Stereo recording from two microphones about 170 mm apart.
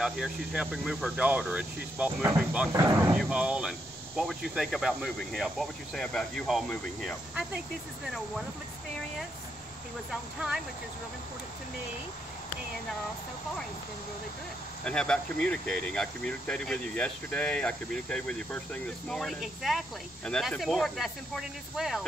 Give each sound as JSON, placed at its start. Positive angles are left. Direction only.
{"t": 0.0, "sound": "speech", "side_deg": 0}
{"t": 2.7, "sound": "speech", "side_deg": -20}
{"t": 3.2, "sound": "speech", "side_deg": -5}
{"t": 14.9, "sound": "speech", "side_deg": 5}